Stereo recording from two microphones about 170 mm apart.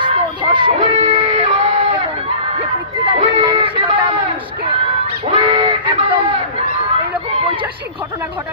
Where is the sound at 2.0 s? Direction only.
35° right (ahead or behind).